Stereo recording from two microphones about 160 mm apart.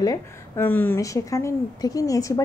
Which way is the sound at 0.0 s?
20° left (ahead or behind).